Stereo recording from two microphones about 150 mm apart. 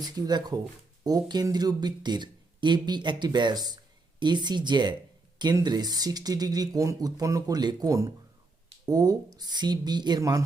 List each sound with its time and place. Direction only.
0.0 s speech: 25° right (ahead or behind)